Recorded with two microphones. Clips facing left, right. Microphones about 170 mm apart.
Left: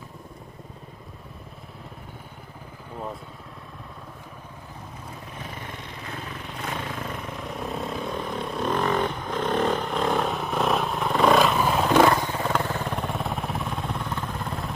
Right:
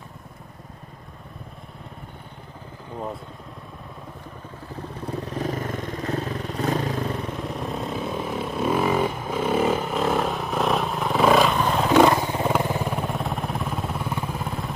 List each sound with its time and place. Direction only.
5.2 s vehicle: 35° right (ahead or behind)
7.5 s vehicle: centre (ahead or behind)
11.9 s vehicle: 10° right (ahead or behind)